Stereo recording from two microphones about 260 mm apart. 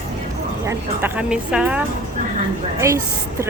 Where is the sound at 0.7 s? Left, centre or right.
Centre.